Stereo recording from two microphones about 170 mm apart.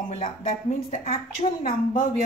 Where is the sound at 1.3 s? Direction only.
55° left (ahead or behind).